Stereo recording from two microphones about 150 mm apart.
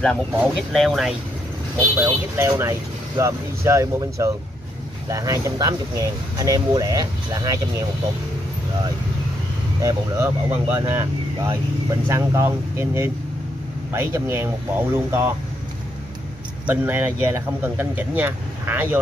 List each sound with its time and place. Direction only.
0.0 s speech: 5° left (ahead or behind)
2.0 s speech: 15° right (ahead or behind)
9.8 s speech: 20° right (ahead or behind)
12.1 s speech: 20° right (ahead or behind)
16.6 s speech: 10° right (ahead or behind)